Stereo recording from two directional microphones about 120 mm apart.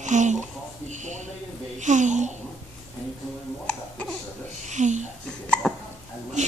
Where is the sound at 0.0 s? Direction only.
90° right.